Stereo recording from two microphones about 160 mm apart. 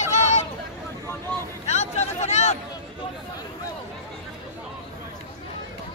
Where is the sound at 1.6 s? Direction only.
45° left (ahead or behind).